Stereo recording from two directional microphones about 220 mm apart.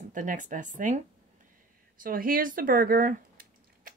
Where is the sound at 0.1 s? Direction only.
35° right (ahead or behind).